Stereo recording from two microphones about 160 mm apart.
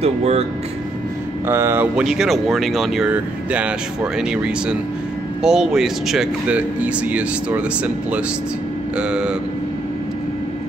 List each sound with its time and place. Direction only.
0.0 s speech: 40° right (ahead or behind)
1.5 s speech: 15° right (ahead or behind)